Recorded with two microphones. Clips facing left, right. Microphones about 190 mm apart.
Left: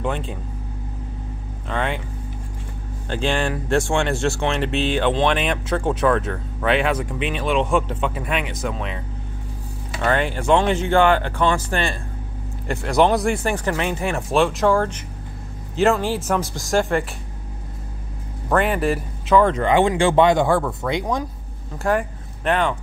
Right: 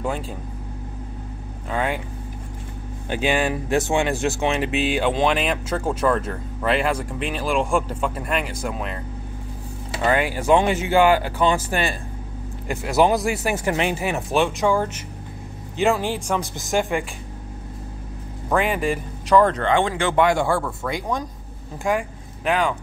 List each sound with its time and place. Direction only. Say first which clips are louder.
0.0 s speech: left 1 dB; 5° right (ahead or behind)
1.7 s speech: even; 5° right (ahead or behind)
3.1 s speech: right 1 dB; 10° right (ahead or behind)
4.3 s speech: even; 15° right (ahead or behind)
10.0 s speech: even; 10° right (ahead or behind)
13.7 s speech: right 3 dB; 15° right (ahead or behind)
18.6 s speech: left 2 dB; centre (ahead or behind)
19.6 s speech: left 4 dB; 20° left (ahead or behind)
21.8 s speech: left 2 dB; 5° right (ahead or behind)